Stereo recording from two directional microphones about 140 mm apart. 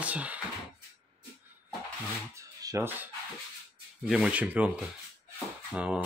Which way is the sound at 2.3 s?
20° right (ahead or behind).